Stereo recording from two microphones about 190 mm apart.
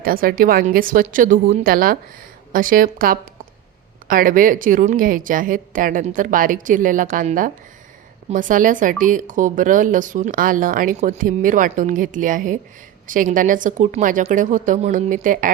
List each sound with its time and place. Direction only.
0.0 s speech: 50° right (ahead or behind)